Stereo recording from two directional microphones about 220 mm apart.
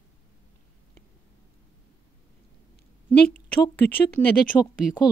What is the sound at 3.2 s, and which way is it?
Speech, 45° left (ahead or behind).